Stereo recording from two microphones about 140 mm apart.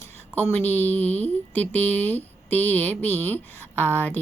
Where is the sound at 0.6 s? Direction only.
15° left (ahead or behind).